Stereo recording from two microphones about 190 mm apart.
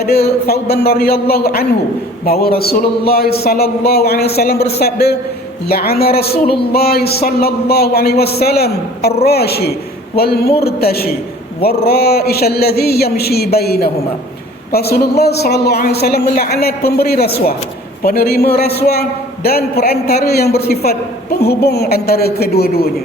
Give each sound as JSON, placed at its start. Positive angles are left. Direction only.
{"t": 0.0, "sound": "a man's voice", "side_deg": 55}